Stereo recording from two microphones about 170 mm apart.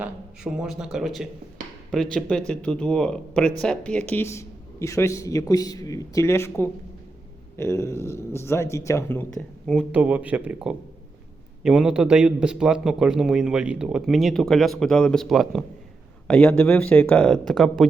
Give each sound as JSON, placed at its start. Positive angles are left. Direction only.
{"t": 0.0, "sound": "a man's voice", "side_deg": -5}
{"t": 9.6, "sound": "a man's voice", "side_deg": -5}